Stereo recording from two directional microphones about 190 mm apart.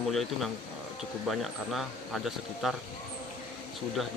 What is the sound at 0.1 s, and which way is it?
Speech, centre (ahead or behind).